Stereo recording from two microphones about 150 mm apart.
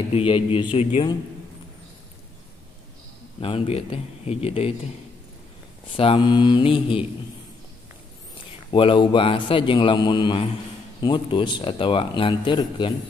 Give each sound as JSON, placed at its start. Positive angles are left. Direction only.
{"t": 0.1, "sound": "speech", "side_deg": 35}
{"t": 3.3, "sound": "speech", "side_deg": 35}
{"t": 5.9, "sound": "speech", "side_deg": 35}
{"t": 8.7, "sound": "speech", "side_deg": 35}